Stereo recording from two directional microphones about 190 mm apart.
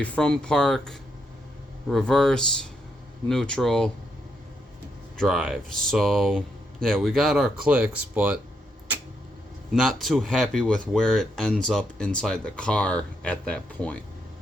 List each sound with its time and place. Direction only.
0.0 s speech: 5° left (ahead or behind)
5.1 s speech: 5° left (ahead or behind)
10.0 s speech: centre (ahead or behind)